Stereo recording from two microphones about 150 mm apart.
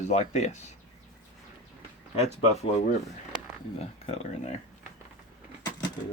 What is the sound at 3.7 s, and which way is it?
Speech, 45° left (ahead or behind).